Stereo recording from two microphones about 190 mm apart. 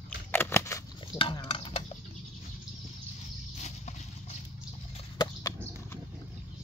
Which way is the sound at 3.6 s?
35° left (ahead or behind).